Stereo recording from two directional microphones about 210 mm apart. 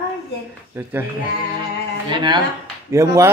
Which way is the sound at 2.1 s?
20° right (ahead or behind).